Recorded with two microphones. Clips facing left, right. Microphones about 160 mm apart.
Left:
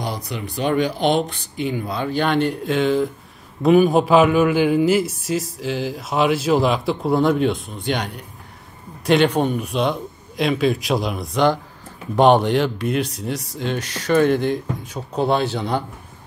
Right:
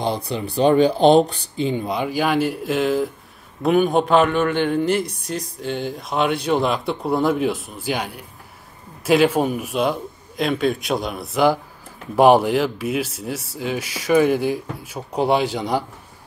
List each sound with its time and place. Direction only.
0.0 s a man's voice: 30° right (ahead or behind); by 15.8 s 10° right (ahead or behind)